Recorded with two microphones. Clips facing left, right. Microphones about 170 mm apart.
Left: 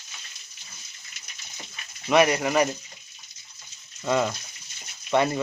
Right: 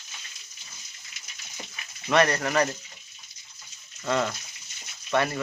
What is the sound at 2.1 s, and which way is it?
Speech, 15° left (ahead or behind).